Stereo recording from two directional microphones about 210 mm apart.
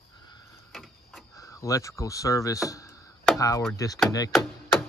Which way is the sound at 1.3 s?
15° left (ahead or behind).